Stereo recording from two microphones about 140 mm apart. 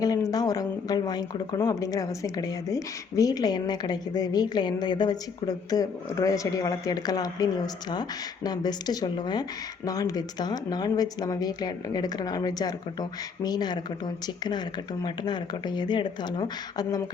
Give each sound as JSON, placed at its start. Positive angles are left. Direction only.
{"t": 0.0, "sound": "speech", "side_deg": 25}
{"t": 15.0, "sound": "speech", "side_deg": 30}